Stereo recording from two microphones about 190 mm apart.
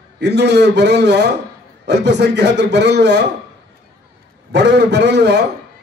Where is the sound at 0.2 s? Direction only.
65° right (ahead or behind).